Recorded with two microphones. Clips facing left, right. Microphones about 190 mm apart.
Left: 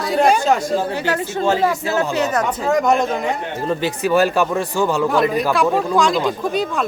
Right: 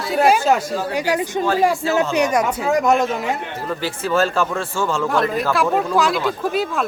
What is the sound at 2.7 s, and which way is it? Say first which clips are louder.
Speech: left 1 dB; centre (ahead or behind).